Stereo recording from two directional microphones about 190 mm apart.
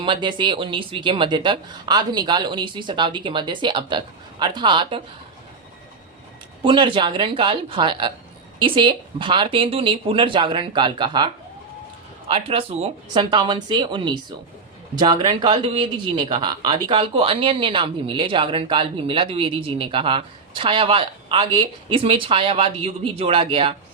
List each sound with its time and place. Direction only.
0.0 s speech: 25° right (ahead or behind)
6.6 s speech: 25° right (ahead or behind)
12.3 s speech: 30° right (ahead or behind)